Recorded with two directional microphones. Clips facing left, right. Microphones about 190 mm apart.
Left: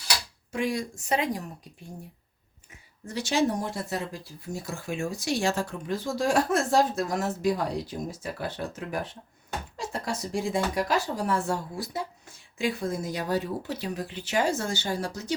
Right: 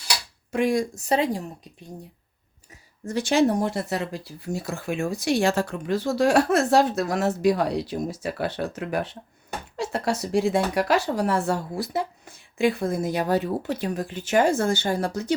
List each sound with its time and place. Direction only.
0.5 s speech: 50° right (ahead or behind); by 1.7 s 25° right (ahead or behind)
3.0 s speech: 50° right (ahead or behind)